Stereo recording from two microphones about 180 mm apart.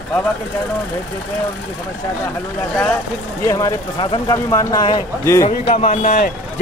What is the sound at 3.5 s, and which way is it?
Speech, 20° left (ahead or behind).